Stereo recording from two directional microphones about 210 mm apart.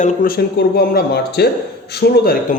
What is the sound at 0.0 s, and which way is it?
A man's voice, 45° left (ahead or behind).